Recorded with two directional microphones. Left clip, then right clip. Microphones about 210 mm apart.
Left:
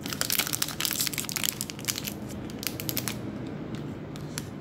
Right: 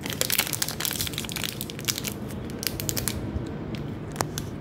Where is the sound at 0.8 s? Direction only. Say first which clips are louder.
Even; 5° left (ahead or behind).